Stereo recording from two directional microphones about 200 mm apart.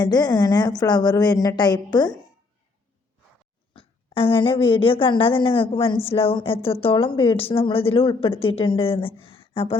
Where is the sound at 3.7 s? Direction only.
25° left (ahead or behind).